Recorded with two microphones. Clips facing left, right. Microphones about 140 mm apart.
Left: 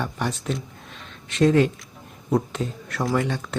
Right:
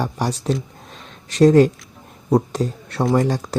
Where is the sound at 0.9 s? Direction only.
35° right (ahead or behind).